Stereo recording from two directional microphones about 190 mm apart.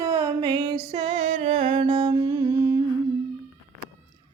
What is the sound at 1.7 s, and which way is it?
Music, 25° right (ahead or behind).